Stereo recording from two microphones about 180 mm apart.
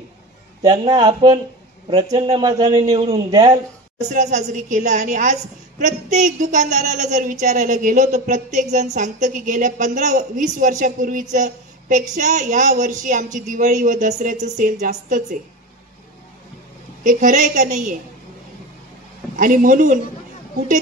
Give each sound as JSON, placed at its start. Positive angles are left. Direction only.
{"t": 0.6, "sound": "a man's voice", "side_deg": -25}
{"t": 4.1, "sound": "a woman's voice", "side_deg": -45}
{"t": 17.0, "sound": "a woman's voice", "side_deg": -45}
{"t": 19.3, "sound": "a woman's voice", "side_deg": -45}